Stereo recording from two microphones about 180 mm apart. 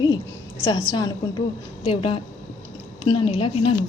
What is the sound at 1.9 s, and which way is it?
A woman's voice, 30° left (ahead or behind).